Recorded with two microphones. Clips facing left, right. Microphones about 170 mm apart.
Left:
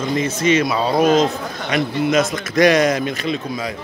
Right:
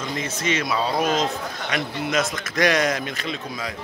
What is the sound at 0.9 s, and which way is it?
Speech, 60° left (ahead or behind).